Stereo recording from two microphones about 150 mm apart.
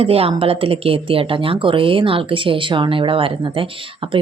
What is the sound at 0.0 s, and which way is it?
Speech, 40° right (ahead or behind).